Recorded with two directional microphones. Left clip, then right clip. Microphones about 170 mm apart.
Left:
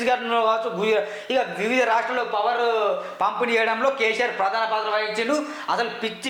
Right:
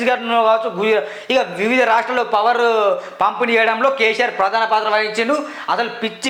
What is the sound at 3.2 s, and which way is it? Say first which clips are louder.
A man's voice: right 6 dB; 30° right (ahead or behind).